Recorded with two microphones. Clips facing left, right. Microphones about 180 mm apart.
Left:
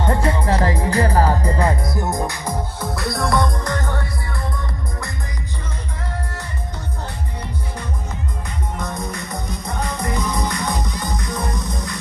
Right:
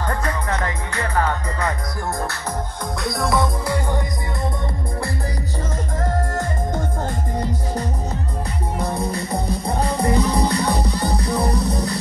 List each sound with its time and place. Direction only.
0.0 s music: 25° left (ahead or behind)
2.8 s music: centre (ahead or behind)
8.7 s music: 30° right (ahead or behind)